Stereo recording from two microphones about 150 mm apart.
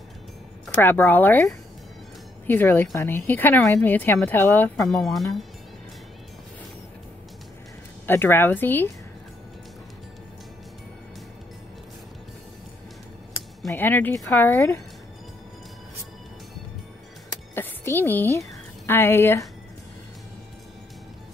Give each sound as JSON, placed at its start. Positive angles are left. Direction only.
{"t": 0.7, "sound": "speech", "side_deg": 15}
{"t": 4.8, "sound": "speech", "side_deg": 0}
{"t": 8.1, "sound": "speech", "side_deg": 15}
{"t": 13.7, "sound": "speech", "side_deg": 15}
{"t": 17.6, "sound": "a woman's voice", "side_deg": 15}